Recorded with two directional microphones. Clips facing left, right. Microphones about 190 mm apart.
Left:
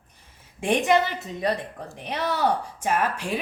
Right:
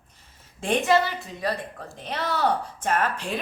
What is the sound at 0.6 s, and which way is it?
A woman's voice, 15° left (ahead or behind).